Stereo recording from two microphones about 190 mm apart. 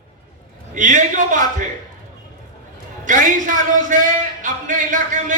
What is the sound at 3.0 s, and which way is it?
Speech, 40° right (ahead or behind).